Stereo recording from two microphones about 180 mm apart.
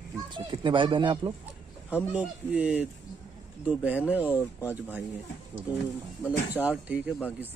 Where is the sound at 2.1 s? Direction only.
10° right (ahead or behind).